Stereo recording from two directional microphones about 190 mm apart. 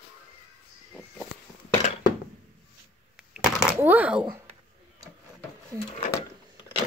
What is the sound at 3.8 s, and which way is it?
Speech, 10° right (ahead or behind).